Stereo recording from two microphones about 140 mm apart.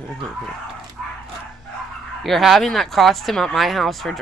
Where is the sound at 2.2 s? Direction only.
Centre (ahead or behind).